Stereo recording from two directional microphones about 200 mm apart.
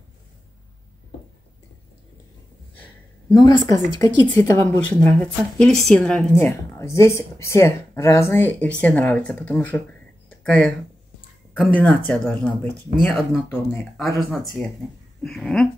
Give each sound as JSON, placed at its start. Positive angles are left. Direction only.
{"t": 3.3, "sound": "a woman's voice", "side_deg": 20}